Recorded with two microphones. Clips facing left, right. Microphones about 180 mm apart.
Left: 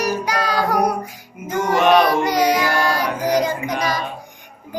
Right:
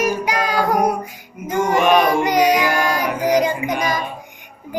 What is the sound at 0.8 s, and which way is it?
Music, 20° right (ahead or behind).